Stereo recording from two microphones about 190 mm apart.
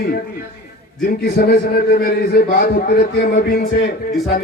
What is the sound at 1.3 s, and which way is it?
A man's voice, 55° left (ahead or behind).